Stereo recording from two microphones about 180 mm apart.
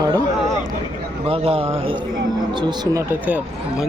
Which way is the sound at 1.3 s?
30° right (ahead or behind).